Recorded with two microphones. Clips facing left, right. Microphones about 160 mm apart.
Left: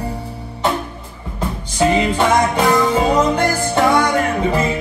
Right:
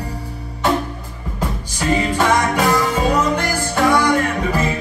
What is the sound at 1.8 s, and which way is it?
Music, 25° left (ahead or behind).